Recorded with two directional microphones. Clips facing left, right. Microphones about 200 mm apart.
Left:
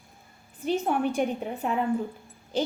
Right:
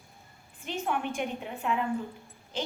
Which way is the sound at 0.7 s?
40° left (ahead or behind).